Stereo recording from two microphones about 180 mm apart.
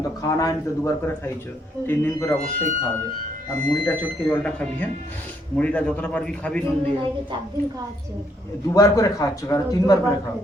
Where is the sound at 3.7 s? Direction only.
10° left (ahead or behind).